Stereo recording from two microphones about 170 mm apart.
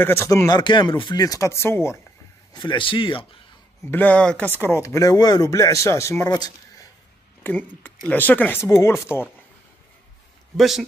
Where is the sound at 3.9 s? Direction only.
10° left (ahead or behind).